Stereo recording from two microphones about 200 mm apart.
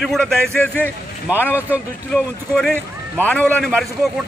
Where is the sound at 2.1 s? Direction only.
5° left (ahead or behind).